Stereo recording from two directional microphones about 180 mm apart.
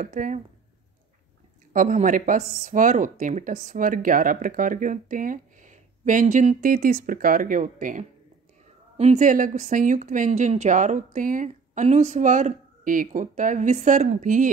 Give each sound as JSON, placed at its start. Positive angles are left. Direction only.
{"t": 0.0, "sound": "speech", "side_deg": -45}
{"t": 1.7, "sound": "speech", "side_deg": -45}